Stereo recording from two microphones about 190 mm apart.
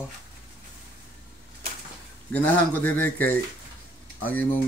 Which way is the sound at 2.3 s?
10° left (ahead or behind).